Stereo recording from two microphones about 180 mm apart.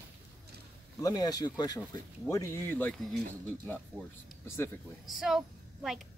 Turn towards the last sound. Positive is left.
turn(degrees=0)  # may be behind; listen again after turning